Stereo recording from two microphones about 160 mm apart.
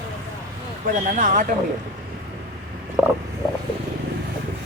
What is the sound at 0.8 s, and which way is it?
Speech, 55° right (ahead or behind).